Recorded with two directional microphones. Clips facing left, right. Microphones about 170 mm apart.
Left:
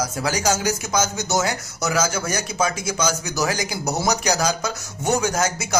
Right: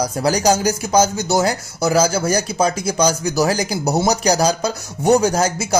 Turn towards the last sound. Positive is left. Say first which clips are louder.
# right 6 dB
turn(degrees=-35)  # may be behind; listen again after turning